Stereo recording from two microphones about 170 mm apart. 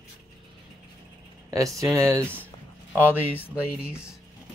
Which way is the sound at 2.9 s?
10° left (ahead or behind).